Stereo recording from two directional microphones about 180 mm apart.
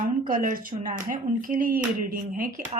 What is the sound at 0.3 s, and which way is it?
Speech, 50° right (ahead or behind).